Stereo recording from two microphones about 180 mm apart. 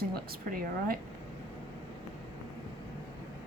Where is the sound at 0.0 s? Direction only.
55° right (ahead or behind).